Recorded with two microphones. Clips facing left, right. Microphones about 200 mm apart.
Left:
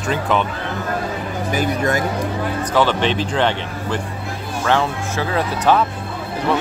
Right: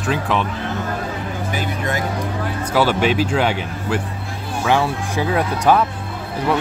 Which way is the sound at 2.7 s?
10° right (ahead or behind).